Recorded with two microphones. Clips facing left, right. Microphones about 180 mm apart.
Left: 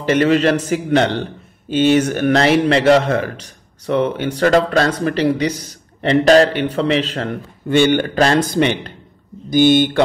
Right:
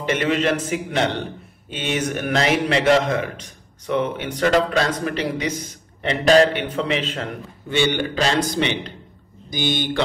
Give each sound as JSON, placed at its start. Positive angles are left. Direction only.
{"t": 0.0, "sound": "a man's voice", "side_deg": 35}
{"t": 4.5, "sound": "a man's voice", "side_deg": 45}
{"t": 7.7, "sound": "a man's voice", "side_deg": 50}